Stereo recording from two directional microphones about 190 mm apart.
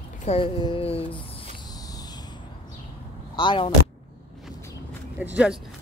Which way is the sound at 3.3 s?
25° left (ahead or behind).